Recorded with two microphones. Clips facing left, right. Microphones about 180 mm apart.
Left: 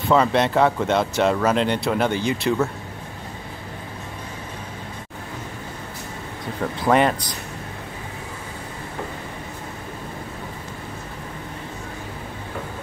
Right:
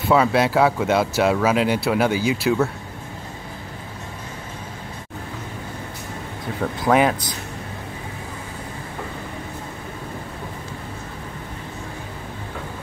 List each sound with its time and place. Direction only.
0.1 s speech: 5° right (ahead or behind)
6.6 s speech: centre (ahead or behind)